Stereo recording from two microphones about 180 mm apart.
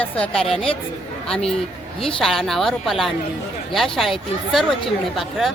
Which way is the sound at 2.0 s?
Centre (ahead or behind).